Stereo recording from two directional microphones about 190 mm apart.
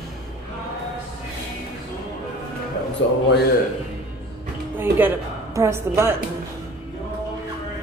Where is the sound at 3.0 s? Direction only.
70° left (ahead or behind).